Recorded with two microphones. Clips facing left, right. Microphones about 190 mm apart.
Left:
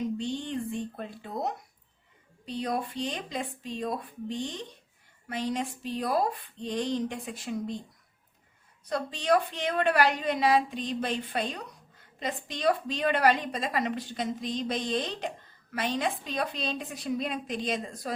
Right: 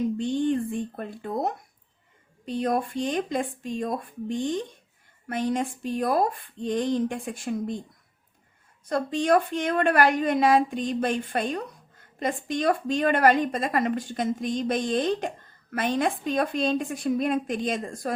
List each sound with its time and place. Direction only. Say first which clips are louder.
0.2 s a woman's voice: right 8 dB; 50° right (ahead or behind)
8.8 s a woman's voice: right 7 dB; 50° right (ahead or behind)